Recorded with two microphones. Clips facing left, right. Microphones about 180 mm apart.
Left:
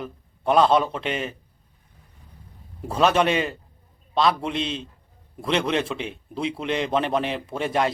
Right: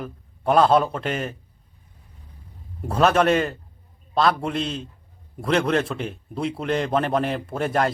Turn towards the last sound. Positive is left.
turn(degrees=0)  # may be behind; listen again after turning